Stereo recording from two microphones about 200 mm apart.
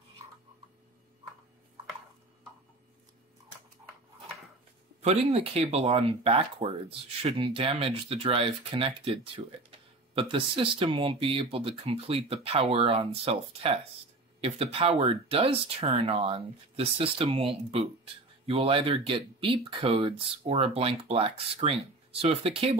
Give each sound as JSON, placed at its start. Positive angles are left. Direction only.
{"t": 5.0, "sound": "speech", "side_deg": -30}